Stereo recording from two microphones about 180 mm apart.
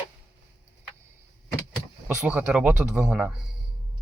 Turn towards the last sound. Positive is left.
turn(degrees=-5)  # may be behind; listen again after turning